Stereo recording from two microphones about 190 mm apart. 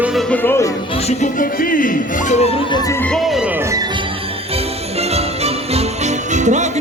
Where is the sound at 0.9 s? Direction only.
35° left (ahead or behind); by 4.0 s 20° right (ahead or behind).